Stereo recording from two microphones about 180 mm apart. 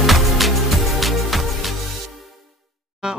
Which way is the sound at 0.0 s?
Centre (ahead or behind).